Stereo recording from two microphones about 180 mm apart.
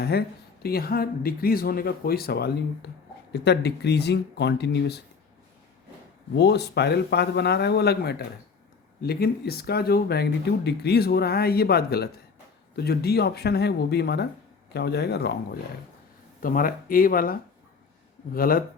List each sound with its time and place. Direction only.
0.0 s speech: 60° left (ahead or behind)
6.3 s speech: 65° left (ahead or behind)
16.4 s speech: 50° left (ahead or behind)